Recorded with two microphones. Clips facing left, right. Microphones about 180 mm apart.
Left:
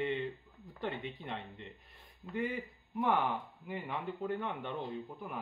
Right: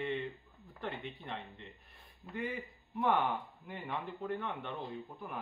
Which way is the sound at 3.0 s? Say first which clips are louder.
Even; 10° left (ahead or behind).